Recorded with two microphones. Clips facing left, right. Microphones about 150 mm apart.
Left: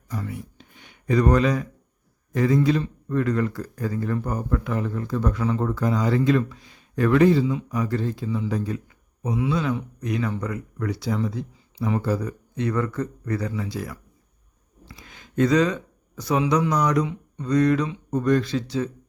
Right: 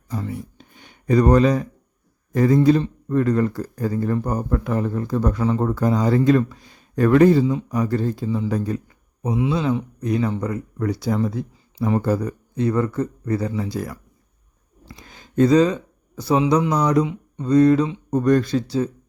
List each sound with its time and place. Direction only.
0.1 s a sound: 30° right (ahead or behind)
2.3 s a man's voice: 40° right (ahead or behind)
12.5 s speech: 30° right (ahead or behind)
14.8 s speech: 40° right (ahead or behind)
17.1 s mantra: 25° right (ahead or behind)
18.1 s speech: 45° right (ahead or behind)